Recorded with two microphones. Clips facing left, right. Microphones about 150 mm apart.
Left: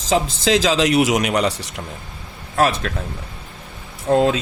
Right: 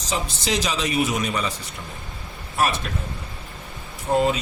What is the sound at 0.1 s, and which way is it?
A man's voice, 90° left.